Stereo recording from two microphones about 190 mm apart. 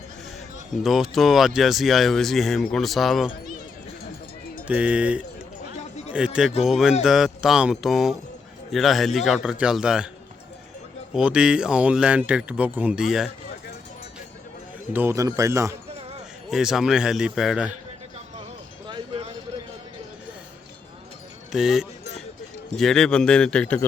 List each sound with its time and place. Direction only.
0.8 s speech: centre (ahead or behind)
4.7 s speech: 5° right (ahead or behind)
11.1 s speech: 5° right (ahead or behind)
14.9 s speech: 15° right (ahead or behind)
16.5 s speech: centre (ahead or behind)
18.9 s a sound: 25° right (ahead or behind)
21.5 s speech: centre (ahead or behind)